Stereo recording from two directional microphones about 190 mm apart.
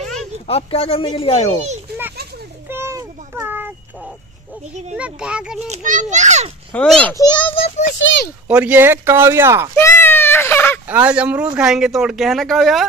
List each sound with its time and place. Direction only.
0.0 s a sound: centre (ahead or behind)
0.5 s speech: 30° left (ahead or behind)
2.7 s a sound: 15° right (ahead or behind)
4.9 s speech: 5° right (ahead or behind)
5.7 s a child's voice: 40° right (ahead or behind)
6.7 s a child's voice: 5° left (ahead or behind)
7.2 s a child's voice: 25° left (ahead or behind)
8.5 s speech: 5° right (ahead or behind)
9.8 s a sound: 15° left (ahead or behind)
10.9 s speech: 5° right (ahead or behind)